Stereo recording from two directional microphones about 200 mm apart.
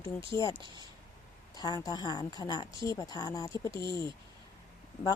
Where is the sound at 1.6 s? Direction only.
20° left (ahead or behind).